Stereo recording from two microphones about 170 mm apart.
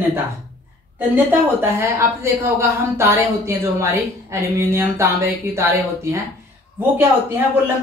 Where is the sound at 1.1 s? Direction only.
15° right (ahead or behind).